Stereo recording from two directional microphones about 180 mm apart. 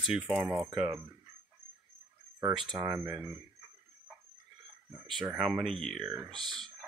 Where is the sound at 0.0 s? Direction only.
5° right (ahead or behind).